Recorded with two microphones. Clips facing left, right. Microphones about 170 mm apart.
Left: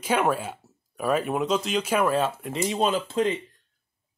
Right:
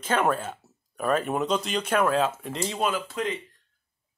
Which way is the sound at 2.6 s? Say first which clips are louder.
Left 3 dB; 20° left (ahead or behind).